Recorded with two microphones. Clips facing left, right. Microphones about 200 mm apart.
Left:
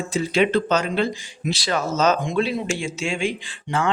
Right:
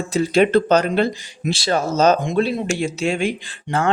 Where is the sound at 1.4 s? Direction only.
30° right (ahead or behind).